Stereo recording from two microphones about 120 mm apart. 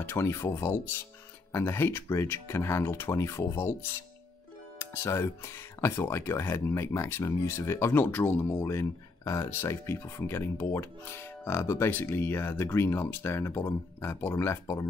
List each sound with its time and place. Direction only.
0.0 s speech: 20° left (ahead or behind)